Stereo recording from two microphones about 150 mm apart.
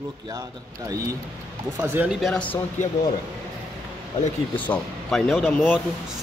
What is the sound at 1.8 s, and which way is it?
Speech, 15° right (ahead or behind).